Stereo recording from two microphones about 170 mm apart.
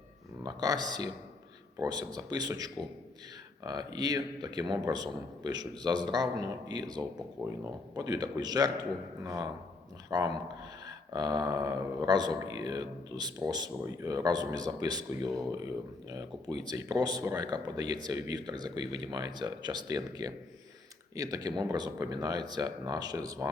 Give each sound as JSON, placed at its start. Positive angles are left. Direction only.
{"t": 0.4, "sound": "speech", "side_deg": -20}